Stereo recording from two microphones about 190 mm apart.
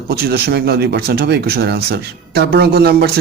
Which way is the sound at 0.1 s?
55° right (ahead or behind).